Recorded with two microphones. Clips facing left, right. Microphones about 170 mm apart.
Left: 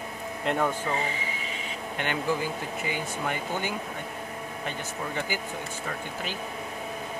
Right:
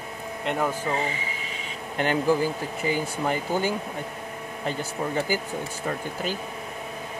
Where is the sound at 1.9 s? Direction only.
35° right (ahead or behind).